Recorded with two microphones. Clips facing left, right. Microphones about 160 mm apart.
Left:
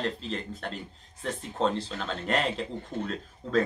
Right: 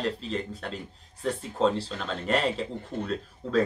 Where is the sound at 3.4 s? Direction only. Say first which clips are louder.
Even; 5° right (ahead or behind).